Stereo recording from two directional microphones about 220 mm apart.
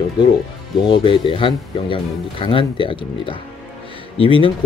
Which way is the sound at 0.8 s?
20° left (ahead or behind).